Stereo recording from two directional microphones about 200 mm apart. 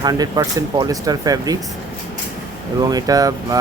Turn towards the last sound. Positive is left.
turn(degrees=-20)  # may be behind; listen again after turning